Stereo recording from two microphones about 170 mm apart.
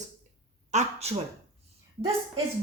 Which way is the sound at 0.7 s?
40° right (ahead or behind).